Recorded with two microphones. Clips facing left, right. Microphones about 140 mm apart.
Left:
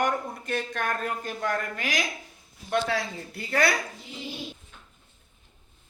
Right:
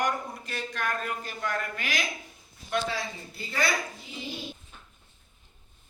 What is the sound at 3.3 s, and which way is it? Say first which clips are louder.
Speech: left 5 dB; 65° left (ahead or behind).